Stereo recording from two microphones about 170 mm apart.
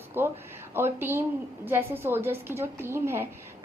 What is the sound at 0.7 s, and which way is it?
A woman's voice, 15° right (ahead or behind).